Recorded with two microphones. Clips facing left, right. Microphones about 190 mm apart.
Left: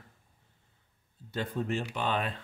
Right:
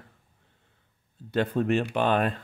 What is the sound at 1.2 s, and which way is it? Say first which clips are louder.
Speech: right 8 dB; 70° right (ahead or behind).